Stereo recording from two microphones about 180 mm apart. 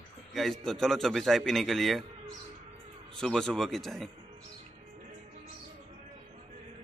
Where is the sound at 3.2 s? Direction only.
5° left (ahead or behind).